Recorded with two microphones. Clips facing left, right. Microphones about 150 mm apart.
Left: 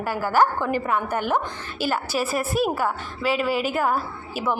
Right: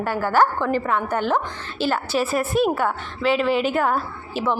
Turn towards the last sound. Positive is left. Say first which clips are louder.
# right 3 dB
turn(degrees=5)  # may be behind; listen again after turning